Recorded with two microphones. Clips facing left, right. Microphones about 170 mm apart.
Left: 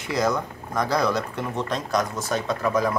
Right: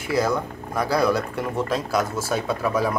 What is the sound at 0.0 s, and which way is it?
Speech, 5° right (ahead or behind).